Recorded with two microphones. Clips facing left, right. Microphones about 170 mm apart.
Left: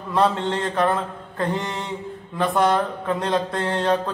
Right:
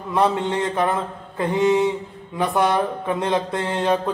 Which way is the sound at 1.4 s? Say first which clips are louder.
Right 8 dB; 20° right (ahead or behind).